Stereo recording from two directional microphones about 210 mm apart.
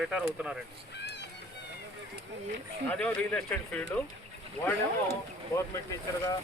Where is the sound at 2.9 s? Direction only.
5° left (ahead or behind).